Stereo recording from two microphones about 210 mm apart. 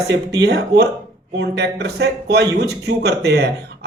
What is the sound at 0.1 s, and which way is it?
Speech, 55° right (ahead or behind).